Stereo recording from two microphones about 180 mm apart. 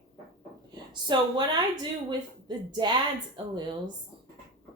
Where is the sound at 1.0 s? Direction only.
25° right (ahead or behind).